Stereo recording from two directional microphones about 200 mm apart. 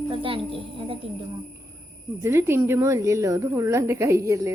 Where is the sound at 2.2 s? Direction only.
10° right (ahead or behind).